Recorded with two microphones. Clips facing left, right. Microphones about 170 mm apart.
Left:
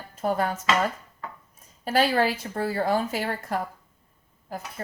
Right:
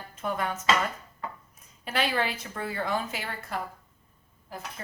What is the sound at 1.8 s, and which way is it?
A woman's voice, 40° left (ahead or behind).